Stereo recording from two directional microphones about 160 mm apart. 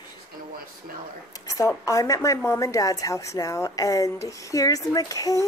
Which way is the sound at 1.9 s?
20° left (ahead or behind).